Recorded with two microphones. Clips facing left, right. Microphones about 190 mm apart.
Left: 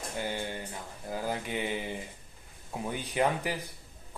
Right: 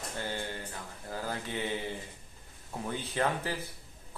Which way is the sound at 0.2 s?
15° left (ahead or behind).